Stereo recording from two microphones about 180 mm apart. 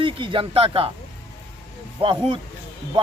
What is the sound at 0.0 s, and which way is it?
Speech, 30° right (ahead or behind).